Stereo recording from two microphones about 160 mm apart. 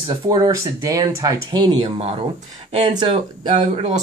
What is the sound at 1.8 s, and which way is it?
Speech, 40° right (ahead or behind).